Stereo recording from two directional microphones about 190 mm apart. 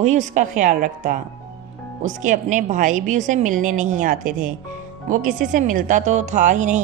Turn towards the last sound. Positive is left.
turn(degrees=-40)  # may be behind; listen again after turning